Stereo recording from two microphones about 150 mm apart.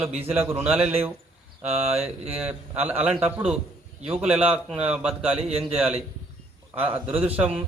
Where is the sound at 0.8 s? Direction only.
40° right (ahead or behind).